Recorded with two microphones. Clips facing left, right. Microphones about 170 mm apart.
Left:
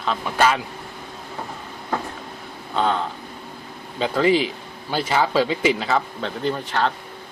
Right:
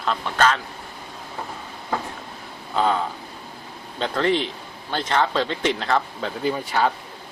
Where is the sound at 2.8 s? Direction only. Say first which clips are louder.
Even; 5° right (ahead or behind).